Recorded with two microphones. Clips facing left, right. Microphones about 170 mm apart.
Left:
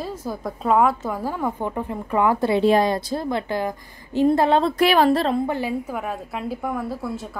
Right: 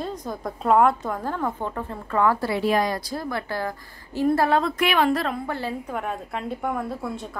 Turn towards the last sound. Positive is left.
turn(degrees=0)  # may be behind; listen again after turning